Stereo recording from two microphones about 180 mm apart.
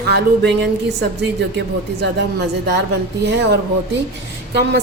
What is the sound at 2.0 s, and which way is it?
Speech, 70° right (ahead or behind).